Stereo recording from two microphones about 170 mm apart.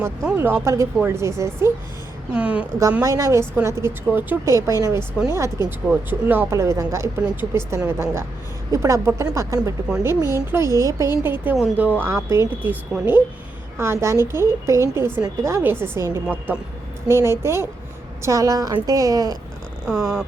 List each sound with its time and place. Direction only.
0.0 s a woman's voice: 15° right (ahead or behind)
3.0 s a woman's voice: 20° right (ahead or behind)
13.7 s a woman's voice: 15° right (ahead or behind)
19.9 s a sound: centre (ahead or behind)